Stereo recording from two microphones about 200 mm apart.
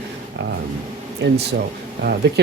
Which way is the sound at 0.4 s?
60° right (ahead or behind).